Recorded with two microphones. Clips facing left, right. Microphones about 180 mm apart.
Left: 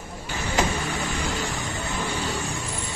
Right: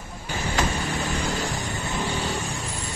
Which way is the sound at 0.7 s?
40° right (ahead or behind).